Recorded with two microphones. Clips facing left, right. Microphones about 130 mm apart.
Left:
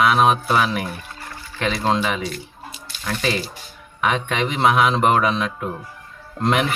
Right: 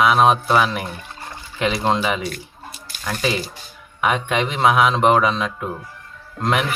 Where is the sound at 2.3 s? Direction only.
50° right (ahead or behind).